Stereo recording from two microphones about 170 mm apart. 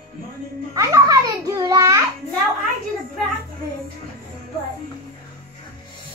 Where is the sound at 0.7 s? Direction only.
20° right (ahead or behind).